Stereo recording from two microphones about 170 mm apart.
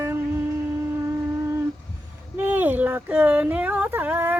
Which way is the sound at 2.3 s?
10° right (ahead or behind).